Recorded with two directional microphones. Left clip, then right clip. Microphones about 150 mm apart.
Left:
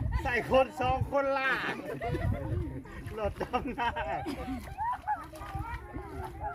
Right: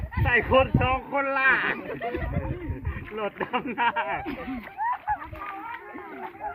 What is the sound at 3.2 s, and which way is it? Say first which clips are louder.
Speech: right 4 dB; 40° left (ahead or behind).